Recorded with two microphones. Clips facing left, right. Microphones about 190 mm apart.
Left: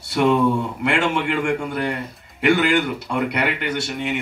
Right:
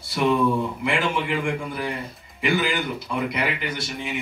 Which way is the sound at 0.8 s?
70° left (ahead or behind).